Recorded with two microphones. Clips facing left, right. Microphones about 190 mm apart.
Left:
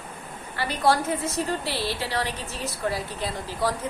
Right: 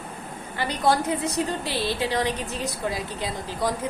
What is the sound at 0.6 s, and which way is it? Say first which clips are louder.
A woman's voice: even; 15° right (ahead or behind).